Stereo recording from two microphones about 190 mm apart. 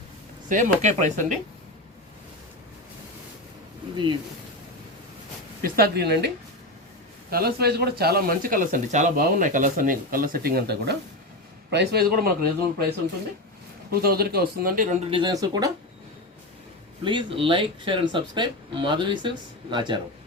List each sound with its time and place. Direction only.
0.4 s speech: 40° right (ahead or behind)
3.9 s speech: 25° right (ahead or behind)
5.6 s speech: 55° right (ahead or behind)
14.0 s speech: 55° right (ahead or behind)
15.1 s speech: 20° right (ahead or behind)
17.0 s speech: 25° right (ahead or behind)